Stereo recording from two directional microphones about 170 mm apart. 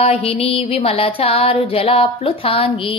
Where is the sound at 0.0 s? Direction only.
35° left (ahead or behind).